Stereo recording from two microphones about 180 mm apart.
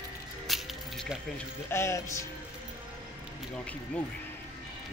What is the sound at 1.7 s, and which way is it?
Speech, 15° left (ahead or behind).